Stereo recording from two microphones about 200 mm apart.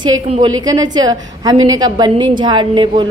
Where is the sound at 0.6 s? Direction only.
20° right (ahead or behind).